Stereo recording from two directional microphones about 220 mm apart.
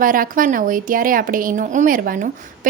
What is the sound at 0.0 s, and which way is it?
A woman's voice, 40° right (ahead or behind).